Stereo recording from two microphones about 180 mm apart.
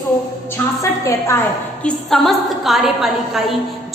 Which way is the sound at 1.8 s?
Centre (ahead or behind).